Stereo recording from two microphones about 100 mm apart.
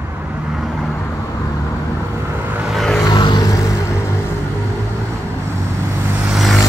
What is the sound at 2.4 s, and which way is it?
Vehicle, 15° right (ahead or behind).